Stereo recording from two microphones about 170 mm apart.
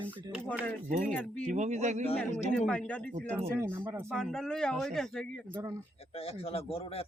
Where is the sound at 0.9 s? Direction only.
45° right (ahead or behind).